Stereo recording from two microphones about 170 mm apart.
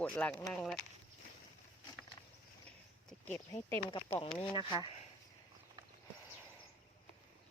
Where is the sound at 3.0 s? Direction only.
5° left (ahead or behind).